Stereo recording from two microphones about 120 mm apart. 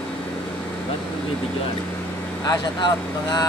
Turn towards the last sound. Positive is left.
turn(degrees=35)  # may be behind; listen again after turning